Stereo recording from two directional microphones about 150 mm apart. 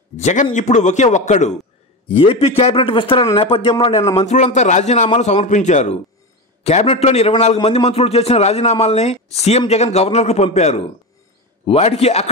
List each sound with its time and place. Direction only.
0.2 s a man's voice: 50° left (ahead or behind)
2.0 s a man's voice: 40° left (ahead or behind)
4.2 s a man's voice: 50° left (ahead or behind)